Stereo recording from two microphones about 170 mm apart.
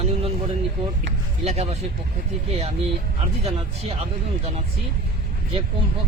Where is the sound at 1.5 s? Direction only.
40° right (ahead or behind).